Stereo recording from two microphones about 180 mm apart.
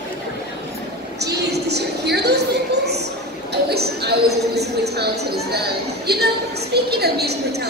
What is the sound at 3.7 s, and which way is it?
A woman's voice, 60° right (ahead or behind).